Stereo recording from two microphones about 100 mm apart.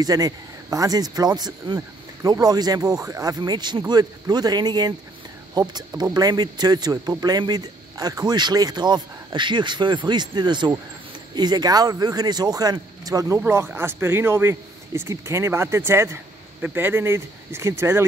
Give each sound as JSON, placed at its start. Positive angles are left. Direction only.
{"t": 0.0, "sound": "a man's voice", "side_deg": -40}
{"t": 13.5, "sound": "speech", "side_deg": -25}